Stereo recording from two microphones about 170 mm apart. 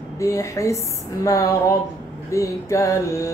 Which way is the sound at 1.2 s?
20° left (ahead or behind).